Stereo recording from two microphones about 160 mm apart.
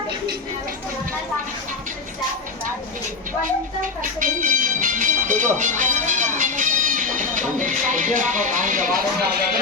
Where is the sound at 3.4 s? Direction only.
55° right (ahead or behind).